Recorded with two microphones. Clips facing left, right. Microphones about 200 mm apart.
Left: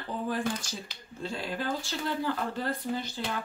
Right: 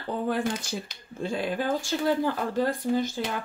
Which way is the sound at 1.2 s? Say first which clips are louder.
Right 6 dB; 50° right (ahead or behind).